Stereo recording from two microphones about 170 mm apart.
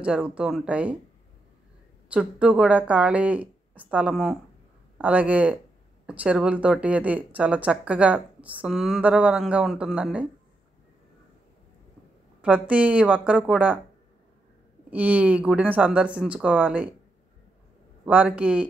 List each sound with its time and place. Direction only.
0.0 s speech: 5° right (ahead or behind)
2.0 s speech: 5° right (ahead or behind)
12.4 s speech: 10° right (ahead or behind)
14.9 s speech: 10° right (ahead or behind)
18.0 s speech: 10° right (ahead or behind)